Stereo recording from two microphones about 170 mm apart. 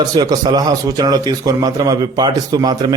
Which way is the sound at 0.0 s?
25° right (ahead or behind).